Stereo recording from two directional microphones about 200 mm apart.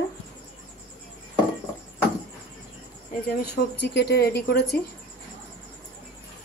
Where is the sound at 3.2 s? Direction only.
50° left (ahead or behind).